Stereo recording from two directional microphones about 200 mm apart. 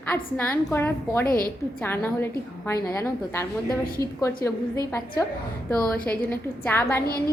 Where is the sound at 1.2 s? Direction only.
45° left (ahead or behind).